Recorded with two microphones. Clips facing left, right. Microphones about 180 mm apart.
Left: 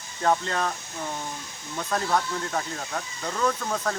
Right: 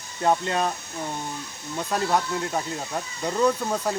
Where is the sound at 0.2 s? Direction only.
15° right (ahead or behind).